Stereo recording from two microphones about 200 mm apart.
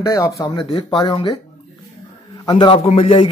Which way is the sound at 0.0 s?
15° left (ahead or behind).